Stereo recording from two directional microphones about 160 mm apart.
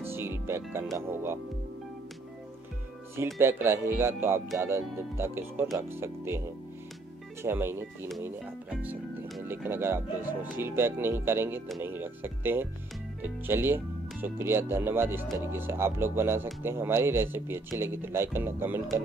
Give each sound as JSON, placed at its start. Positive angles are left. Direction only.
{"t": 0.0, "sound": "music", "side_deg": -15}
{"t": 0.9, "sound": "speech", "side_deg": -15}
{"t": 3.3, "sound": "speech", "side_deg": -15}
{"t": 7.4, "sound": "speech", "side_deg": -15}